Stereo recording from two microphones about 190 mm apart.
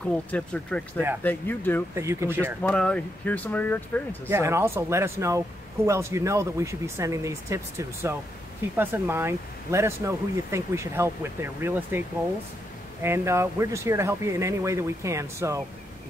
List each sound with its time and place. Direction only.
0.0 s speech: 5° left (ahead or behind)
2.0 s speech: 15° right (ahead or behind)
2.6 s speech: 5° left (ahead or behind)
4.3 s speech: 15° right (ahead or behind)
13.0 s speech: 15° right (ahead or behind)